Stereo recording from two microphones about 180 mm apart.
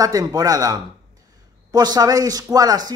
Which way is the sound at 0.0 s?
20° right (ahead or behind).